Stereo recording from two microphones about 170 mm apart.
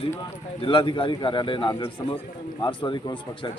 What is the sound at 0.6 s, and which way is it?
A man's voice, 30° left (ahead or behind).